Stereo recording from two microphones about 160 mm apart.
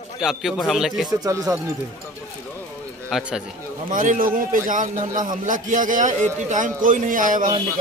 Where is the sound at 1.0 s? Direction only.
20° right (ahead or behind).